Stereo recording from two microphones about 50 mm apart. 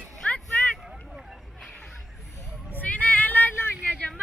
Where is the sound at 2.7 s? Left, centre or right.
Left.